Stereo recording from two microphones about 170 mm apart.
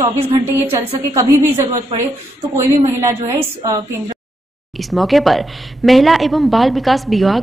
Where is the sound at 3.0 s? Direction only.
20° right (ahead or behind).